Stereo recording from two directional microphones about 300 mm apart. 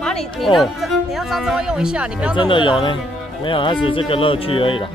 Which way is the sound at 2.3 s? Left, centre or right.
Centre.